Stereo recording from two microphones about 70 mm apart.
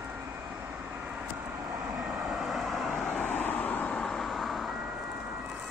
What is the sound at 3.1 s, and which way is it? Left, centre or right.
Vehicle, left.